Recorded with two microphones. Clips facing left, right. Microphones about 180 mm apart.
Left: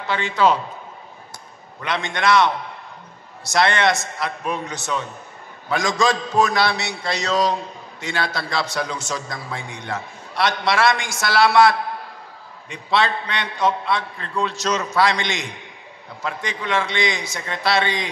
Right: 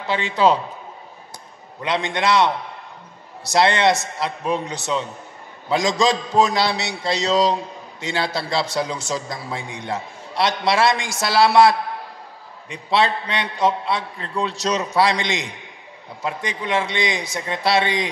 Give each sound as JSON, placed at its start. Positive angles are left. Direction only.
{"t": 0.1, "sound": "a man's voice", "side_deg": -25}
{"t": 1.8, "sound": "a man's voice", "side_deg": -20}
{"t": 3.5, "sound": "a man's voice", "side_deg": -20}
{"t": 12.7, "sound": "a man's voice", "side_deg": -25}